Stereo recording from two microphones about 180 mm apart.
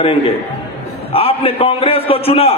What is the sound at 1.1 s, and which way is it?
A man's voice, 35° left (ahead or behind).